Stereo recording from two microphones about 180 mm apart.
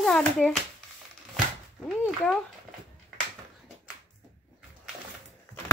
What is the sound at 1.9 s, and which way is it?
Speech, 5° right (ahead or behind).